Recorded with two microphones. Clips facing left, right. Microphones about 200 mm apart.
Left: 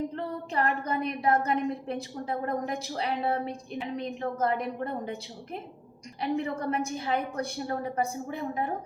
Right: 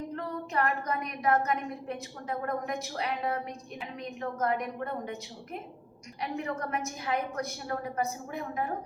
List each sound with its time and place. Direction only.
0.2 s a woman's voice: 30° left (ahead or behind)